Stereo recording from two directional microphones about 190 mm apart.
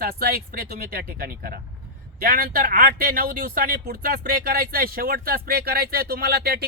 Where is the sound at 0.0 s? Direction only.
55° right (ahead or behind).